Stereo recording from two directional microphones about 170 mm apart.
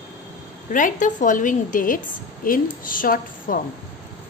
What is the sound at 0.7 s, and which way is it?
A woman's voice, 50° left (ahead or behind).